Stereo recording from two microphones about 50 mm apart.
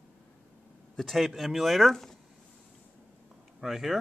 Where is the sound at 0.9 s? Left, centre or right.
Centre.